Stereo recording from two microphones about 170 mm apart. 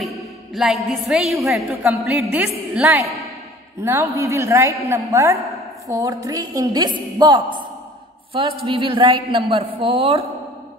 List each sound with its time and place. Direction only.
0.6 s a woman's voice: centre (ahead or behind); by 7.4 s 25° right (ahead or behind)
8.6 s a woman's voice: 30° right (ahead or behind)